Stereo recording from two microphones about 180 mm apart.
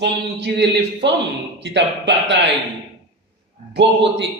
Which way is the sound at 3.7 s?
75° right (ahead or behind).